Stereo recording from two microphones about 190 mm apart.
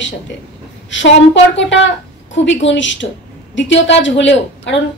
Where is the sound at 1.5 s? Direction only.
75° left (ahead or behind).